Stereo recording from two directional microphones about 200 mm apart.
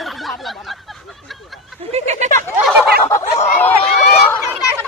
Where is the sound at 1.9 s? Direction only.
35° right (ahead or behind).